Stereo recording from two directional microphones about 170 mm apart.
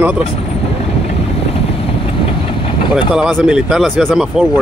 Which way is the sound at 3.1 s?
5° right (ahead or behind).